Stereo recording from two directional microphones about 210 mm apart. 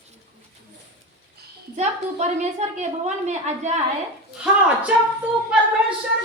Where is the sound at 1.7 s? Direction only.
35° right (ahead or behind).